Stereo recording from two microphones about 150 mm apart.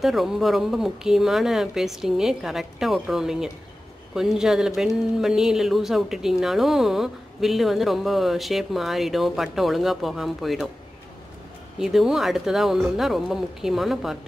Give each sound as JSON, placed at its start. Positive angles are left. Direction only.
{"t": 0.0, "sound": "speech", "side_deg": 0}
{"t": 11.8, "sound": "speech", "side_deg": 0}